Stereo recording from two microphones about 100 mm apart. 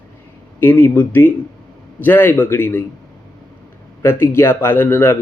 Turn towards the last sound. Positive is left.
turn(degrees=25)  # may be behind; listen again after turning